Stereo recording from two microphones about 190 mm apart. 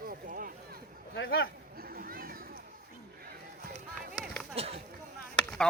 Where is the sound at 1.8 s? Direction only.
50° right (ahead or behind).